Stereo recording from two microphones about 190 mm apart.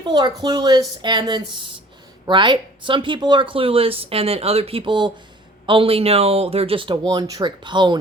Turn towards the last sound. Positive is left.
turn(degrees=-25)  # may be behind; listen again after turning